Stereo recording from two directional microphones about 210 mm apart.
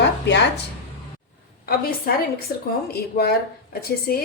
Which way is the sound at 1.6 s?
45° left (ahead or behind).